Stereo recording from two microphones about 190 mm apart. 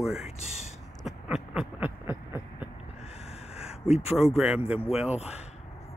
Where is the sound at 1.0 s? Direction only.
5° right (ahead or behind).